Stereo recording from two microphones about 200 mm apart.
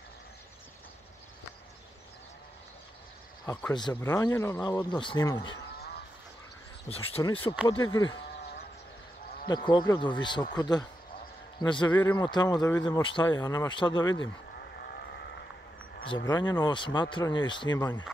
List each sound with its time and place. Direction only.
3.7 s speech: 20° left (ahead or behind)
5.8 s a sound: 50° left (ahead or behind)
6.9 s speech: 30° left (ahead or behind)
9.5 s speech: 20° left (ahead or behind)
14.6 s vehicle: 55° left (ahead or behind)
16.3 s speech: 20° left (ahead or behind)